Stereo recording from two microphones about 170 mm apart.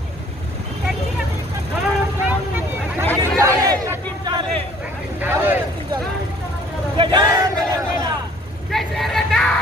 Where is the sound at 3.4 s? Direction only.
20° right (ahead or behind).